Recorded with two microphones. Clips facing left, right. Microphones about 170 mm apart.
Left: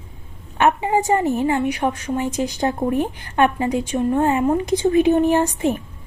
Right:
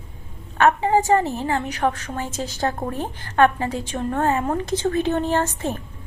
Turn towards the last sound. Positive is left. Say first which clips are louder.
# left 5 dB
turn(degrees=15)  # may be behind; listen again after turning